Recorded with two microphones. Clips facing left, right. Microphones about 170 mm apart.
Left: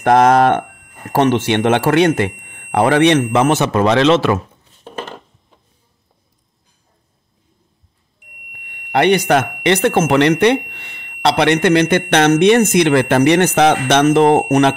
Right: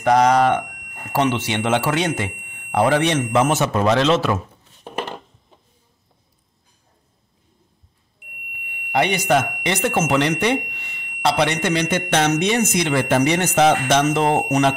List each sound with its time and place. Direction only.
0.0 s speech: 55° left (ahead or behind); by 4.4 s 80° left
4.8 s a sound: 15° right (ahead or behind)
8.9 s speech: 65° left (ahead or behind)